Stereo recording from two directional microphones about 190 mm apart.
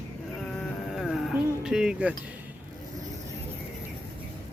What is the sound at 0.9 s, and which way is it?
Music, centre (ahead or behind).